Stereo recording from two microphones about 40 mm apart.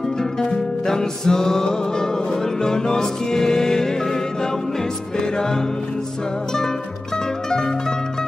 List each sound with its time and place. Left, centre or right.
0.2 s music: centre
7.4 s music: centre